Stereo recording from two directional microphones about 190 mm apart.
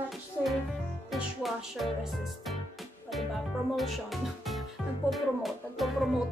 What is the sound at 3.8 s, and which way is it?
Speech, centre (ahead or behind).